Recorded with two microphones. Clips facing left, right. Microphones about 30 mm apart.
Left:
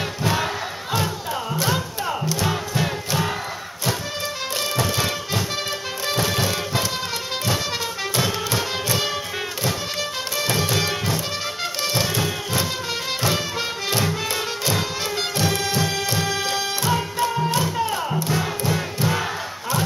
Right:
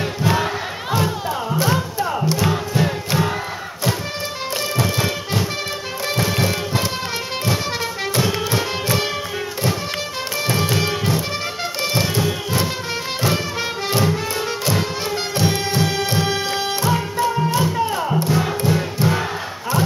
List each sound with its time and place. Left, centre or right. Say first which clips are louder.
0.9 s music: right 3 dB; right
6.3 s music: right 2 dB; centre
10.5 s music: right 2 dB; right
13.2 s music: right 3 dB; right
15.4 s music: right 3 dB; right
16.9 s music: right 2 dB; centre